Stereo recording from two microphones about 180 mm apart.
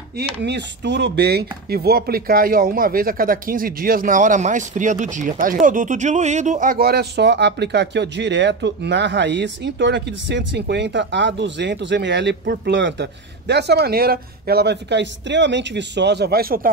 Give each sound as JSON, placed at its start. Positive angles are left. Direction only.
{"t": 0.4, "sound": "speech", "side_deg": -70}